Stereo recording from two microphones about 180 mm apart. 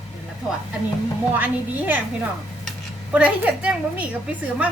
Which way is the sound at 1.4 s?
10° right (ahead or behind).